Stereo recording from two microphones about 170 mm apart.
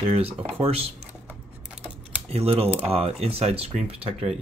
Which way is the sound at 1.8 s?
35° right (ahead or behind).